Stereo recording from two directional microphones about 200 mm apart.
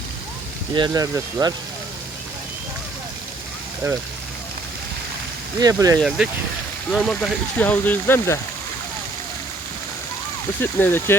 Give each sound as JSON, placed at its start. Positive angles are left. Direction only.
{"t": 0.7, "sound": "speech", "side_deg": -20}
{"t": 5.5, "sound": "speech", "side_deg": -20}
{"t": 6.0, "sound": "speech", "side_deg": -5}
{"t": 10.6, "sound": "speech", "side_deg": 10}